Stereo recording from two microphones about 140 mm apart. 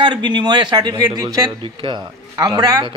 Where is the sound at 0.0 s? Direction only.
35° right (ahead or behind).